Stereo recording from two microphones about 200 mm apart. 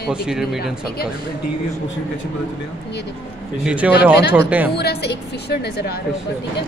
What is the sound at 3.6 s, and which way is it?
A man's voice, 5° right (ahead or behind).